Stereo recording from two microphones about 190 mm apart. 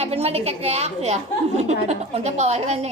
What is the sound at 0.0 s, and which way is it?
A woman's voice, 35° right (ahead or behind).